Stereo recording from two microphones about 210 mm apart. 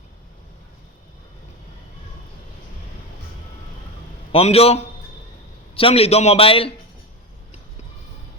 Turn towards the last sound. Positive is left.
turn(degrees=25)  # may be behind; listen again after turning